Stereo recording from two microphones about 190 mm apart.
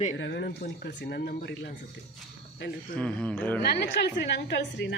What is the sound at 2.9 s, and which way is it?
Speech, 5° left (ahead or behind).